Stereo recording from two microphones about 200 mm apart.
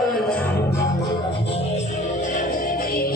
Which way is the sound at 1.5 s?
35° left (ahead or behind).